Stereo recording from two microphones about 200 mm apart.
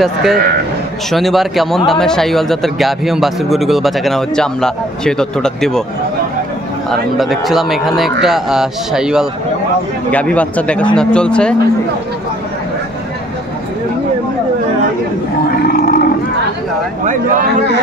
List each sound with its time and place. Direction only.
0.0 s speech: centre (ahead or behind)
6.9 s speech: centre (ahead or behind)
15.6 s livestock: 50° left (ahead or behind)
17.0 s speech: 40° right (ahead or behind)